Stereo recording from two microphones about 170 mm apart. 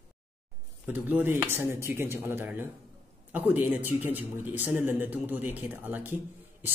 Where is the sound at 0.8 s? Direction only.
10° right (ahead or behind).